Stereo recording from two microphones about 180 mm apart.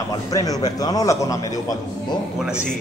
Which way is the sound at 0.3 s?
20° left (ahead or behind).